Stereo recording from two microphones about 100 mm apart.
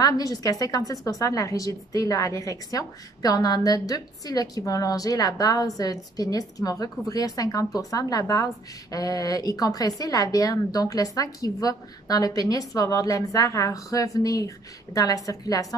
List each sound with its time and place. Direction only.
0.0 s a woman's voice: 35° left (ahead or behind)